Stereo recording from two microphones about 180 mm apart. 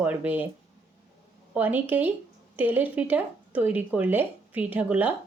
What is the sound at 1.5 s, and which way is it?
Speech, 10° right (ahead or behind).